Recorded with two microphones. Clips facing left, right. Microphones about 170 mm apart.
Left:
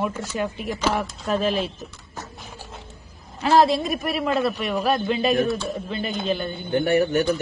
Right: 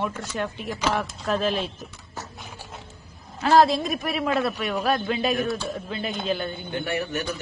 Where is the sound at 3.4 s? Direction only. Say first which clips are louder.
Even; centre (ahead or behind).